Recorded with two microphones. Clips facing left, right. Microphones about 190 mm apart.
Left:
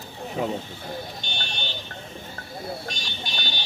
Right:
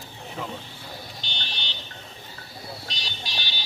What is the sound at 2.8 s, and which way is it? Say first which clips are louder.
Vehicle: left 4 dB; 50° left (ahead or behind).